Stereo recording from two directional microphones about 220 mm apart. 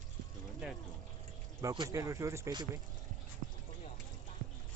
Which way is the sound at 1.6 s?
15° right (ahead or behind).